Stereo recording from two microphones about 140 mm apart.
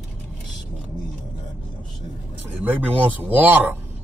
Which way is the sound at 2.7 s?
10° right (ahead or behind).